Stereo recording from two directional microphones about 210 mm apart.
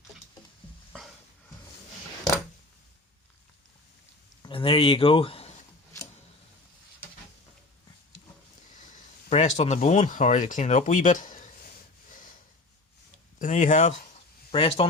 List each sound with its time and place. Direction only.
4.4 s speech: 25° left (ahead or behind)
8.9 s a sound: 35° left (ahead or behind)
9.6 s speech: 35° left (ahead or behind)
13.4 s speech: 35° left (ahead or behind)
14.5 s speech: 25° left (ahead or behind)